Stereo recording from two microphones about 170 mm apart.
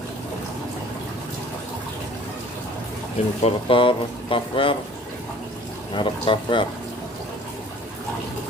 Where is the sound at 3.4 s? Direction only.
35° left (ahead or behind).